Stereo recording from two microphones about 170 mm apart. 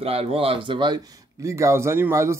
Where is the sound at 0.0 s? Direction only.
35° right (ahead or behind).